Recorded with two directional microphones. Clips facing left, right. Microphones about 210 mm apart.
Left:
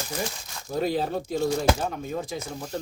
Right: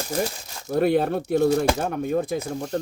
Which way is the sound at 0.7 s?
60° right (ahead or behind).